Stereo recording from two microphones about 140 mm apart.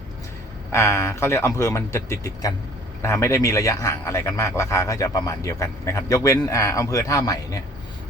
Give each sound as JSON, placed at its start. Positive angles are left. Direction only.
{"t": 0.7, "sound": "a man's voice", "side_deg": 20}